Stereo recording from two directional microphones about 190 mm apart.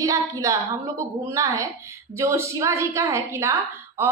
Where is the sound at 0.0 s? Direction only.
15° right (ahead or behind).